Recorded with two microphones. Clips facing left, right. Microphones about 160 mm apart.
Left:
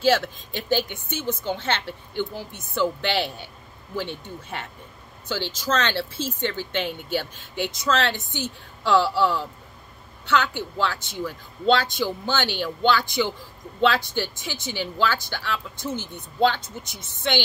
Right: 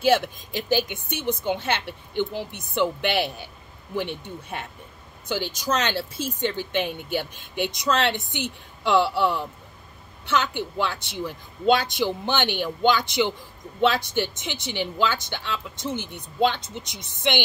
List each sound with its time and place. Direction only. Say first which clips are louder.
0.0 s speech: even; 15° right (ahead or behind)
5.3 s speech: even; 15° right (ahead or behind)